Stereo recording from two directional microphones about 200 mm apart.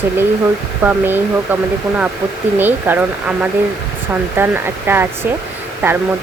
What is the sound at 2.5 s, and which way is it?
Speech, 10° right (ahead or behind).